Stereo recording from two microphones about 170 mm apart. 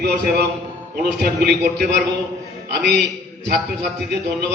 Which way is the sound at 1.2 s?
60° right (ahead or behind).